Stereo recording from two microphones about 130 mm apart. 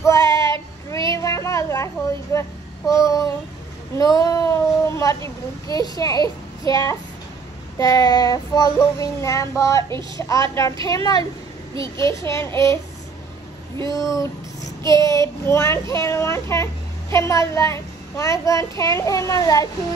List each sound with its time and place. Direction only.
0.0 s child singing: 25° left (ahead or behind)
0.8 s a sound: 25° left (ahead or behind)
2.3 s a child's voice: 25° left (ahead or behind)
14.9 s a child's voice: 25° left (ahead or behind)